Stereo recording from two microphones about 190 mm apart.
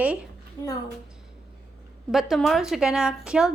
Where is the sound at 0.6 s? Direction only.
25° left (ahead or behind).